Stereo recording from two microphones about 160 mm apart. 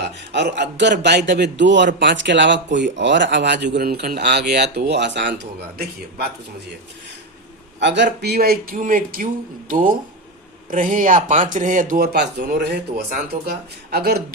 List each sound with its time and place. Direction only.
0.0 s speech: 90° right
7.8 s speech: 90° right